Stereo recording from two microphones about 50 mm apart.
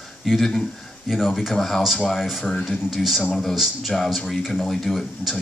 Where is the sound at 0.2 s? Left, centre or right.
Centre.